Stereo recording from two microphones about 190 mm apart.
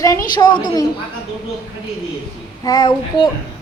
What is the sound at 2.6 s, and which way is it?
Speech, 20° left (ahead or behind).